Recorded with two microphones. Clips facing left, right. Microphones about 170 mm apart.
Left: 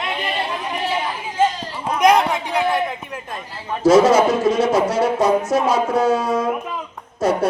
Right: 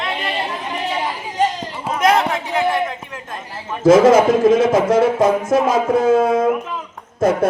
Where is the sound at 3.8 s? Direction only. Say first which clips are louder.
Right 2 dB; 50° right (ahead or behind).